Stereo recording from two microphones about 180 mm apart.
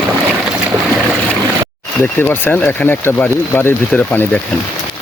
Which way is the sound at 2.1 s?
10° left (ahead or behind).